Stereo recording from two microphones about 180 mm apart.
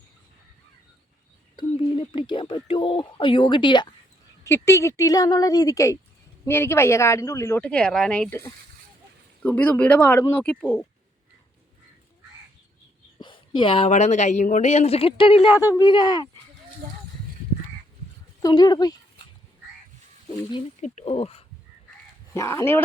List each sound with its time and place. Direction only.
1.5 s speech: 25° left (ahead or behind)
4.4 s speech: 15° left (ahead or behind)
13.1 s speech: 25° left (ahead or behind)
18.4 s speech: 25° left (ahead or behind)
20.8 s speech: 40° left (ahead or behind)
22.4 s speech: 15° left (ahead or behind)